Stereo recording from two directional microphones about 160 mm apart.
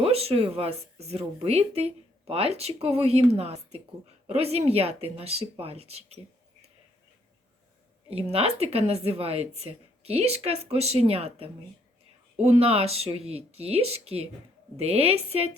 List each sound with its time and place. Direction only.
0.0 s speech: 40° right (ahead or behind)
8.1 s speech: 40° right (ahead or behind)